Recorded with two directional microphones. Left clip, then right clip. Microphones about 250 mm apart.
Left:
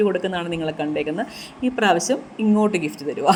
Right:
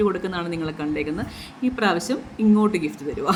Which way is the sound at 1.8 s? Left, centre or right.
Right.